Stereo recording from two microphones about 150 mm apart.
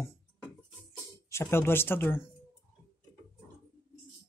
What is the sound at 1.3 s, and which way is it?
Speech, 15° left (ahead or behind).